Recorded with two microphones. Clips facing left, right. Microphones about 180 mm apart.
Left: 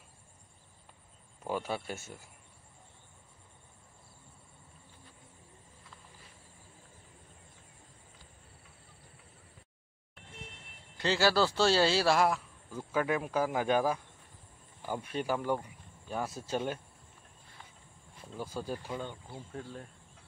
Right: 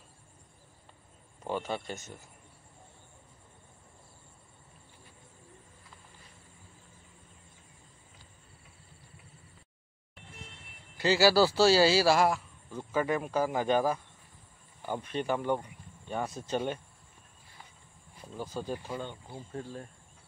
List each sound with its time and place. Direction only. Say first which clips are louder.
1.4 s speech: right 1 dB; 5° left (ahead or behind)
11.0 s speech: right 4 dB; 5° right (ahead or behind)
18.1 s insect: right 1 dB; 5° left (ahead or behind)
18.6 s speech: right 2 dB; 15° right (ahead or behind)
19.3 s speech: right 3 dB; centre (ahead or behind)